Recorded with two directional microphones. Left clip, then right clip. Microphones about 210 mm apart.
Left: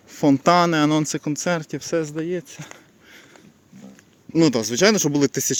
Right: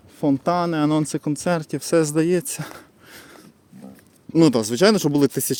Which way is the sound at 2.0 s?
35° right (ahead or behind).